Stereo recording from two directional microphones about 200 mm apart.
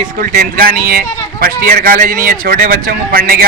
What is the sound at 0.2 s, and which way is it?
A man's voice, 45° right (ahead or behind).